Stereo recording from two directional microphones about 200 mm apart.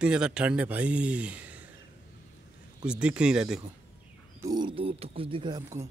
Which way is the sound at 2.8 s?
5° right (ahead or behind).